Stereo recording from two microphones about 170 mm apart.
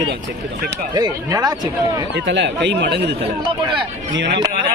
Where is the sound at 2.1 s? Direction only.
90° right.